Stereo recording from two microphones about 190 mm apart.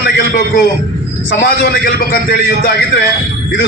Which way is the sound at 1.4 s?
55° left (ahead or behind).